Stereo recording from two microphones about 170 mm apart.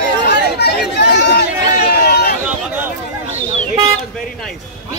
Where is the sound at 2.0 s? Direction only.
70° left (ahead or behind).